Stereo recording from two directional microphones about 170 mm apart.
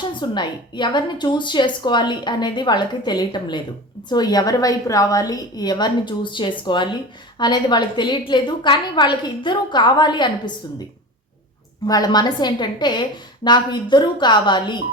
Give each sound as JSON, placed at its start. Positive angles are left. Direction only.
{"t": 0.2, "sound": "a woman's voice", "side_deg": 25}
{"t": 11.9, "sound": "a woman's voice", "side_deg": 25}